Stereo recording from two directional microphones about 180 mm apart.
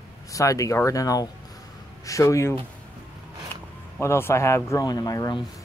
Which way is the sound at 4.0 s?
15° left (ahead or behind).